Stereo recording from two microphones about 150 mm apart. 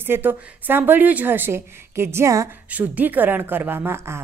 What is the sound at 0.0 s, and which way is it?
A woman's voice, 15° right (ahead or behind).